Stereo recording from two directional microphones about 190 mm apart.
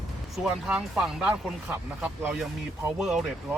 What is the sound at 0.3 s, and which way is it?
Speech, centre (ahead or behind).